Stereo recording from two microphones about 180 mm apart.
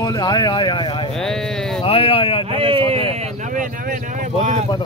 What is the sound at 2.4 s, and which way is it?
Speech, 30° right (ahead or behind).